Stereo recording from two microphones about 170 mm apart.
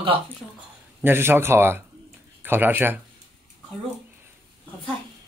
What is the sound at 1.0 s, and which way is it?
Speech, 15° right (ahead or behind).